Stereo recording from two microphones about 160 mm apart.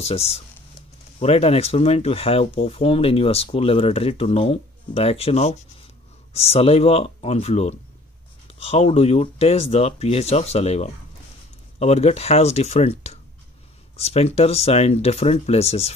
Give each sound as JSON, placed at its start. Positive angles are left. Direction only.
{"t": 0.0, "sound": "speech", "side_deg": 40}